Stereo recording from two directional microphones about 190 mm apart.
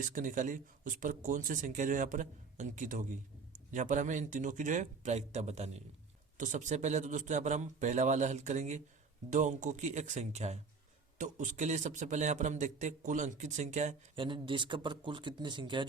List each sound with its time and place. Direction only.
0.1 s a man's voice: 45° right (ahead or behind)
14.2 s speech: 25° right (ahead or behind)